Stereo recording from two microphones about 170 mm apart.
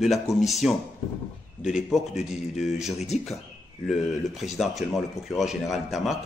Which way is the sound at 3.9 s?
Centre (ahead or behind).